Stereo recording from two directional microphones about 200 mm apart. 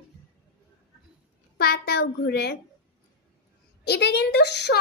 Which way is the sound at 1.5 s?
50° left (ahead or behind).